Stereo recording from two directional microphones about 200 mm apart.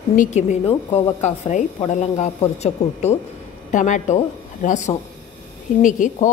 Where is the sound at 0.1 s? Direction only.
40° left (ahead or behind).